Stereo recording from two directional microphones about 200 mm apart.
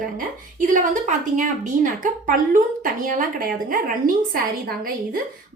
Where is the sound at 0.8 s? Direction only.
40° right (ahead or behind).